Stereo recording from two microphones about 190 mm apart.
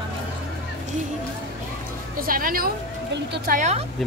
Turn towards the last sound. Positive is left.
turn(degrees=-35)  # may be behind; listen again after turning